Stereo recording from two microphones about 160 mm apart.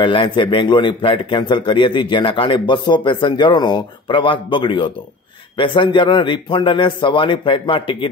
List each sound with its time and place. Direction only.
0.0 s a man's voice: 30° left (ahead or behind)